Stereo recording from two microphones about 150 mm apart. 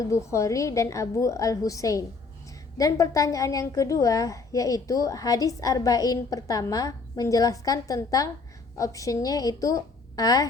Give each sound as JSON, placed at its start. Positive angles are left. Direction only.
{"t": 0.0, "sound": "a woman's voice", "side_deg": 20}